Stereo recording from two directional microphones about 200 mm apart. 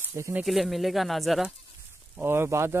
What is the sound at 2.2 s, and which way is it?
Speech, 10° right (ahead or behind).